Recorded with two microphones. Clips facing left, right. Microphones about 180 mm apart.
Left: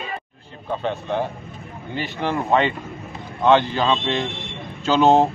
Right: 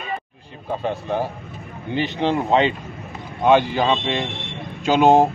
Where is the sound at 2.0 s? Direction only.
20° right (ahead or behind).